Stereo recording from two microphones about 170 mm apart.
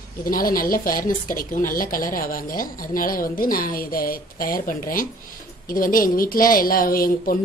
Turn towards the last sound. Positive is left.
turn(degrees=60)  # may be behind; listen again after turning